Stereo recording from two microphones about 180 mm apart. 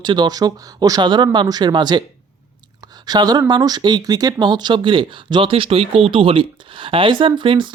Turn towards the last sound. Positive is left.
turn(degrees=-25)  # may be behind; listen again after turning